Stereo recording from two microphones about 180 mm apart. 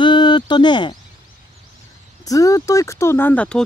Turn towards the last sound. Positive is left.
turn(degrees=5)  # may be behind; listen again after turning